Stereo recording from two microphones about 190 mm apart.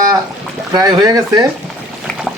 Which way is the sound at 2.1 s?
5° left (ahead or behind).